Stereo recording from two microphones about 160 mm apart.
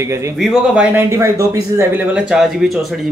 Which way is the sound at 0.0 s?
15° right (ahead or behind).